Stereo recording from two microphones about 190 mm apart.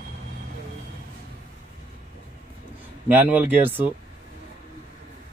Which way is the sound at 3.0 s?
10° right (ahead or behind).